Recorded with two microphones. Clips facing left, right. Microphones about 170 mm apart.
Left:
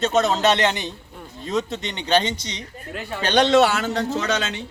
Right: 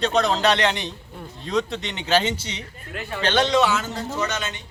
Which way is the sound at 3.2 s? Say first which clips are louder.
Left 2 dB; 15° left (ahead or behind).